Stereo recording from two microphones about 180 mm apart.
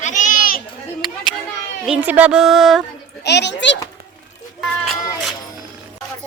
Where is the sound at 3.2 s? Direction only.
70° left (ahead or behind).